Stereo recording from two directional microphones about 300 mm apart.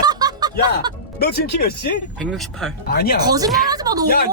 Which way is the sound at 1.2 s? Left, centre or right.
Left.